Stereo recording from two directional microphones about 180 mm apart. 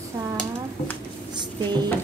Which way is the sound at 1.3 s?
25° right (ahead or behind).